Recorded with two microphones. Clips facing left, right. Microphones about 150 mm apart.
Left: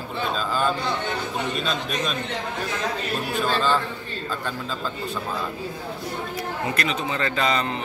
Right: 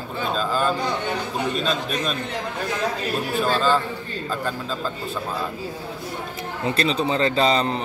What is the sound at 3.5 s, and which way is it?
Speech, 5° right (ahead or behind).